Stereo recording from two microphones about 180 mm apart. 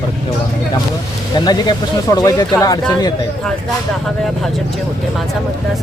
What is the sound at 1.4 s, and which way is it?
Speech, 25° left (ahead or behind).